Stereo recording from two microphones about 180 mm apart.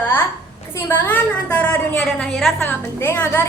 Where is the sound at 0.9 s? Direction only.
10° left (ahead or behind).